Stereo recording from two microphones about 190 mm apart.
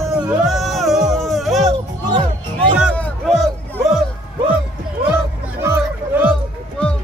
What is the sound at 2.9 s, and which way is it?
Music, 5° left (ahead or behind).